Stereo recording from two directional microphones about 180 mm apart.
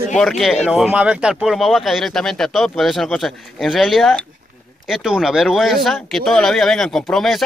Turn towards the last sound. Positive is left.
turn(degrees=0)  # may be behind; listen again after turning